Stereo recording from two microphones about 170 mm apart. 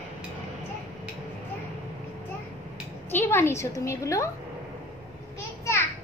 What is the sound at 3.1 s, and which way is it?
A woman's voice, 15° left (ahead or behind).